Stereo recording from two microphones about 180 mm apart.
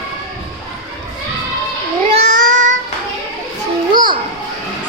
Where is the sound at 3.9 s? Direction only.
25° right (ahead or behind).